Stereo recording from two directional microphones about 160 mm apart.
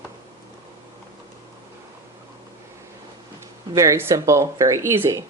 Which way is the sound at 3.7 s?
15° right (ahead or behind).